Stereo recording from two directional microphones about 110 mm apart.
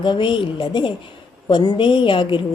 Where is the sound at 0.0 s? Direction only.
45° left (ahead or behind).